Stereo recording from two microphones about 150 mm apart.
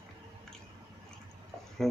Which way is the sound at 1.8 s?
Centre (ahead or behind).